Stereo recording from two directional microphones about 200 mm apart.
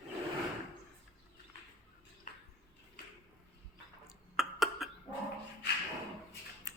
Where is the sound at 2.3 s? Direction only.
40° left (ahead or behind).